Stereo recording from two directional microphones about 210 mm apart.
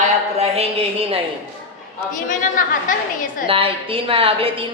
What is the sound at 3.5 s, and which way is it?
A woman's voice, 25° right (ahead or behind).